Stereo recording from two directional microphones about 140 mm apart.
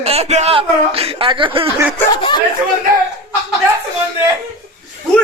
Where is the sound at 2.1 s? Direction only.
35° left (ahead or behind).